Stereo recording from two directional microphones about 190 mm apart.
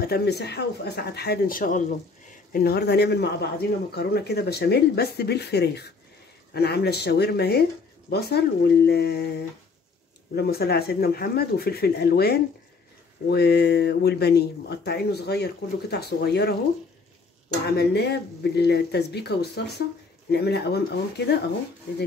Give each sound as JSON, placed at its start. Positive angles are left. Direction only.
{"t": 0.0, "sound": "speech", "side_deg": 55}
{"t": 2.5, "sound": "speech", "side_deg": 55}
{"t": 17.6, "sound": "speech", "side_deg": 60}